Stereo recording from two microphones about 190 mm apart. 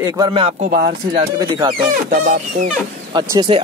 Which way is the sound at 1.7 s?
50° right (ahead or behind).